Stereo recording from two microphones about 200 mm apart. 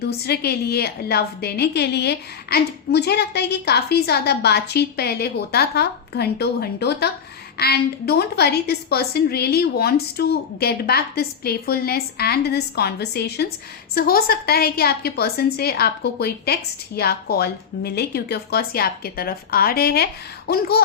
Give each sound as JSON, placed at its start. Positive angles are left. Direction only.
{"t": 0.3, "sound": "a woman's voice", "side_deg": 55}